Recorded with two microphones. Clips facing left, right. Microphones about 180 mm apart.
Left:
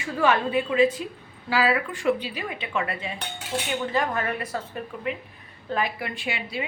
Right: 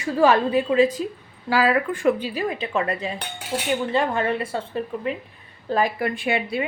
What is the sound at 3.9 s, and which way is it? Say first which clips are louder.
Speech: right 3 dB; 30° right (ahead or behind).